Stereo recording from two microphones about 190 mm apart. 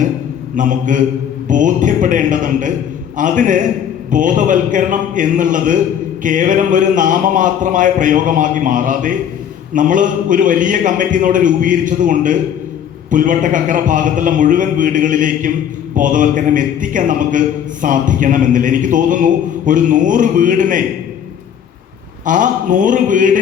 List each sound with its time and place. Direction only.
0.5 s a man's voice: 40° right (ahead or behind)
22.3 s a man's voice: 45° right (ahead or behind)